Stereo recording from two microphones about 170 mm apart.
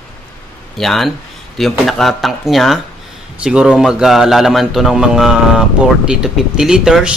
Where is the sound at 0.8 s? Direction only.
Centre (ahead or behind).